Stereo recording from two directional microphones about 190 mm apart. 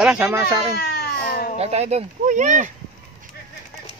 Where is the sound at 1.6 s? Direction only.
35° right (ahead or behind).